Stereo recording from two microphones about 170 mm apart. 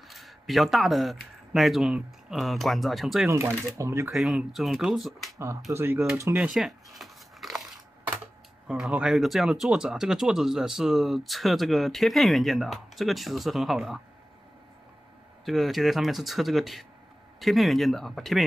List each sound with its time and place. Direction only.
0.1 s speech: centre (ahead or behind)
3.3 s speech: 15° right (ahead or behind)
4.1 s speech: centre (ahead or behind)
5.7 s speech: 15° right (ahead or behind)
6.5 s a sound: centre (ahead or behind)
8.6 s speech: 5° right (ahead or behind)
15.4 s speech: centre (ahead or behind)